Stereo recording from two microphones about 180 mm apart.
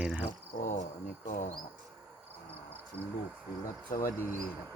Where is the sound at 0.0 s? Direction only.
5° right (ahead or behind).